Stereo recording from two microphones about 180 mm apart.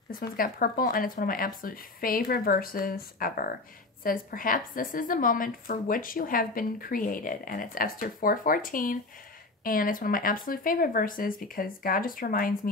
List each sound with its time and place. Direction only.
0.1 s a woman's voice: 55° left (ahead or behind)